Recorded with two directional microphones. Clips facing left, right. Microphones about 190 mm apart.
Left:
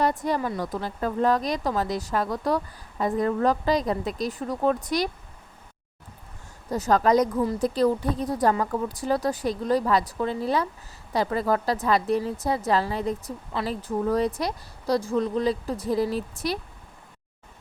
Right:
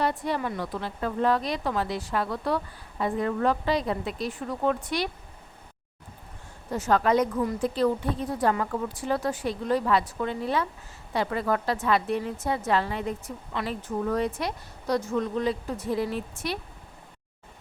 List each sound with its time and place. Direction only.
0.0 s a woman's voice: 45° left (ahead or behind)
6.7 s a woman's voice: 40° left (ahead or behind)